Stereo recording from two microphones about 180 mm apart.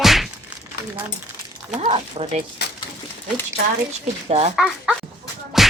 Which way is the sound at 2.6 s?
65° left (ahead or behind).